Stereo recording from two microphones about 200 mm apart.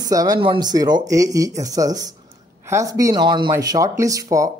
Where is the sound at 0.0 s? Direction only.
20° right (ahead or behind).